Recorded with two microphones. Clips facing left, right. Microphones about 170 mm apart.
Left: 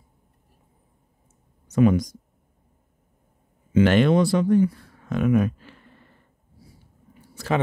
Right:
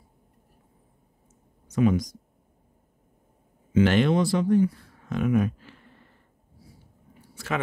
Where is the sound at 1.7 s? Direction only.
55° left (ahead or behind).